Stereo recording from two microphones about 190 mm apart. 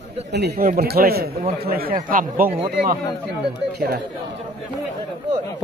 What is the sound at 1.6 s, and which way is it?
Speech, 50° right (ahead or behind).